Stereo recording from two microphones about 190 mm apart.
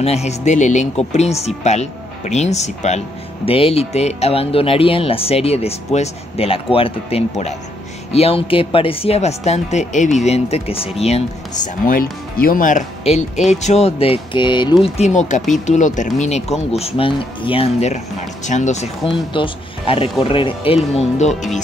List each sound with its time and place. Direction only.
0.0 s speech: 35° left (ahead or behind)
11.8 s speech: 50° left (ahead or behind)